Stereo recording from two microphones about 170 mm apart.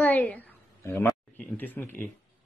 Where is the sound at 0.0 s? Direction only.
10° left (ahead or behind).